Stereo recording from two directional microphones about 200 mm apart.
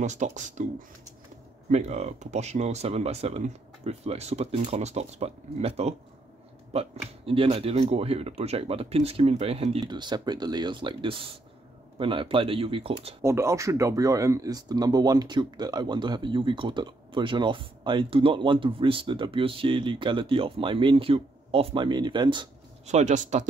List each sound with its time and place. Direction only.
0.0 s speech: 35° right (ahead or behind)
13.2 s speech: 15° right (ahead or behind)
22.8 s speech: 35° right (ahead or behind)